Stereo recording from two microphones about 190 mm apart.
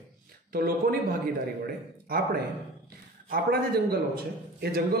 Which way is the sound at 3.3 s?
55° right (ahead or behind).